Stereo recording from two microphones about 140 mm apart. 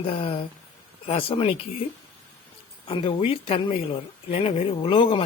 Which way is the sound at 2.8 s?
40° left (ahead or behind).